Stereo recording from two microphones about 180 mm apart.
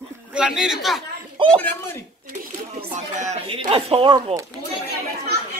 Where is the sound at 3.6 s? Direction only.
30° right (ahead or behind).